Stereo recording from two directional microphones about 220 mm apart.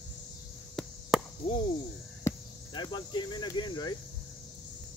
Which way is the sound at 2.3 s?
20° left (ahead or behind).